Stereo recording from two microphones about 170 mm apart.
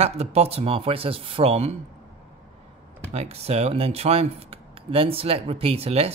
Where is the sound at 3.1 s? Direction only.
40° right (ahead or behind).